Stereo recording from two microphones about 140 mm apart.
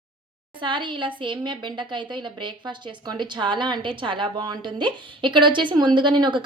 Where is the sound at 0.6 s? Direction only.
35° right (ahead or behind).